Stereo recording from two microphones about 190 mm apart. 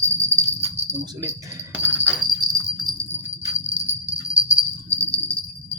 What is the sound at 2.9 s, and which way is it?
Jingle bell, centre (ahead or behind).